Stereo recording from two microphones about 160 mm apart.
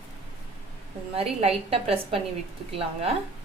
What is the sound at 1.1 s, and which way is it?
A woman's voice, 40° right (ahead or behind).